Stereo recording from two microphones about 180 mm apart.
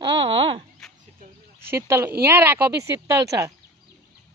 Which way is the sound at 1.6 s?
15° right (ahead or behind).